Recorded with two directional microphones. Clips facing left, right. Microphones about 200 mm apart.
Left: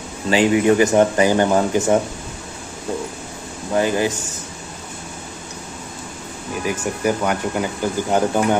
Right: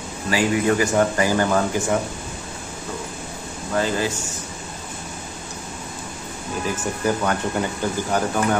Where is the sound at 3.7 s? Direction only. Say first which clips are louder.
Left 4 dB; 20° left (ahead or behind).